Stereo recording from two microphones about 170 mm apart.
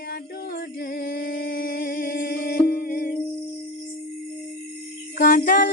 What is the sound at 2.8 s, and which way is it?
Music, 60° left (ahead or behind).